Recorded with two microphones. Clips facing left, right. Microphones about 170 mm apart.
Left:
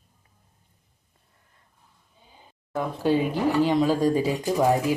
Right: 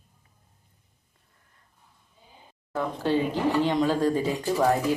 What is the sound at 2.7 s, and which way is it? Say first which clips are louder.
Speech: left 2 dB; 10° left (ahead or behind).